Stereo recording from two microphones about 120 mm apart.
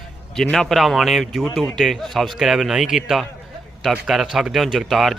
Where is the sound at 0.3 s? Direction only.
5° left (ahead or behind).